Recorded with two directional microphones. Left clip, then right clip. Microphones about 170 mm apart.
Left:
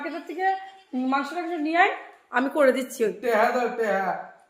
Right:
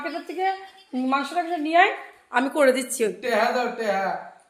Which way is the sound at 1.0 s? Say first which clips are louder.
Right 3 dB; 25° right (ahead or behind).